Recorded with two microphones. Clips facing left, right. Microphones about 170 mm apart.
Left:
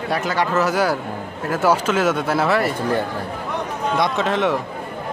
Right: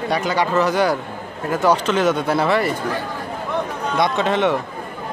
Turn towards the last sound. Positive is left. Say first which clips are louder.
# right 1 dB
turn(degrees=0)  # may be behind; listen again after turning